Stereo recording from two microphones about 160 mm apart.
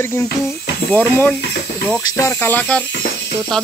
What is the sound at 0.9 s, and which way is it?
Speech, 10° left (ahead or behind).